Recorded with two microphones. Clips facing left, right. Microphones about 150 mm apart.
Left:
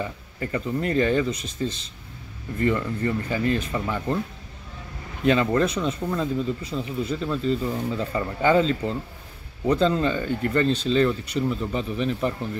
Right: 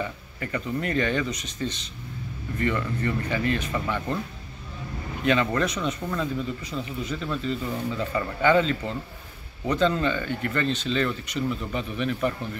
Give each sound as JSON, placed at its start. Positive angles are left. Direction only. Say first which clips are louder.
{"t": 0.0, "sound": "speech", "louder": "left 2 dB", "side_deg": 30}
{"t": 5.2, "sound": "speech", "louder": "left 3 dB", "side_deg": 35}